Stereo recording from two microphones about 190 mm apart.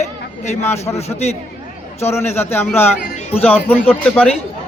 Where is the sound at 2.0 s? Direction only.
15° left (ahead or behind).